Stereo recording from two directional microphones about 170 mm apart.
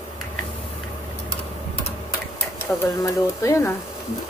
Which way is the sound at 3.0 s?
20° left (ahead or behind).